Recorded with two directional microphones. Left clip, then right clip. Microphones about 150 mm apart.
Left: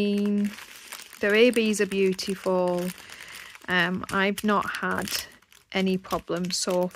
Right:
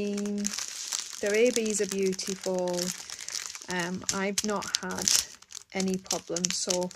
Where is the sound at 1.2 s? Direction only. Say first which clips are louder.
Left 5 dB; 85° left.